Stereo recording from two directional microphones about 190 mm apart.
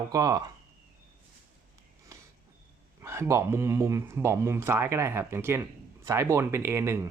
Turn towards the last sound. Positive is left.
turn(degrees=-15)  # may be behind; listen again after turning